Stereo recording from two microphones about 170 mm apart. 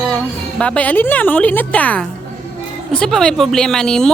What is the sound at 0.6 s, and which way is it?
Speech, 10° left (ahead or behind).